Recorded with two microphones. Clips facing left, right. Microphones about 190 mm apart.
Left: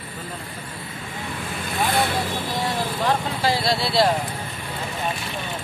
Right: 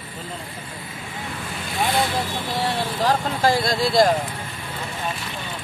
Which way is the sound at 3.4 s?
50° right (ahead or behind).